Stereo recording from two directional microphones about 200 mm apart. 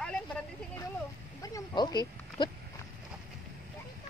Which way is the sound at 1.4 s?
20° left (ahead or behind).